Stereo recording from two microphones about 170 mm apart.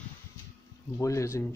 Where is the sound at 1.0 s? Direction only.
15° left (ahead or behind).